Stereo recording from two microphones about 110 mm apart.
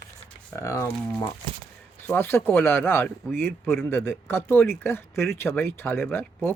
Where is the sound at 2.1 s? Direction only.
20° left (ahead or behind).